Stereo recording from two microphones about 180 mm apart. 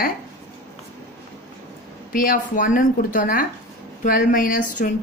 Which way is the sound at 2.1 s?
50° left (ahead or behind).